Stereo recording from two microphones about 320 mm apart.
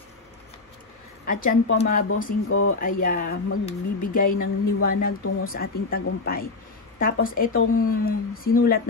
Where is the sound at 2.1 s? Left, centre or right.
Left.